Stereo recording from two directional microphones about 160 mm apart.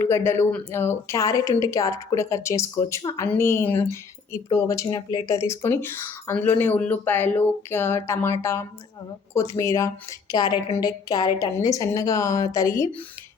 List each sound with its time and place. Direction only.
0.0 s speech: 15° left (ahead or behind)